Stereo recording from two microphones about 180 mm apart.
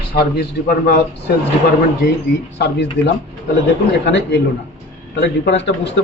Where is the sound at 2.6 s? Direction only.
75° left (ahead or behind).